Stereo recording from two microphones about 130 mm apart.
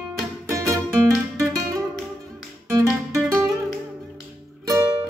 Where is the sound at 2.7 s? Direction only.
25° right (ahead or behind).